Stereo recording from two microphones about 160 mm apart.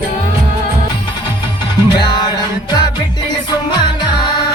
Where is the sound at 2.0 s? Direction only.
25° left (ahead or behind).